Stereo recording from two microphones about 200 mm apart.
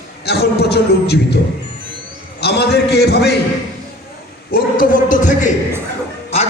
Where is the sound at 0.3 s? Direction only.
55° left (ahead or behind).